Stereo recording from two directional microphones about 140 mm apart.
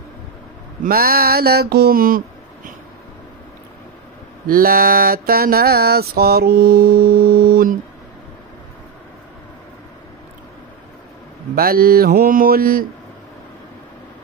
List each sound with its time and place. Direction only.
0.8 s a sound: 90° right
4.5 s mantra: 90° right
11.5 s mantra: 90° right